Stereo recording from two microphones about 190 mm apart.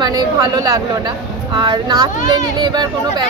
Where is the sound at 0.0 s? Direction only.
20° right (ahead or behind).